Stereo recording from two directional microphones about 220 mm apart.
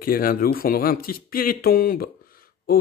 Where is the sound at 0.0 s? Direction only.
40° left (ahead or behind).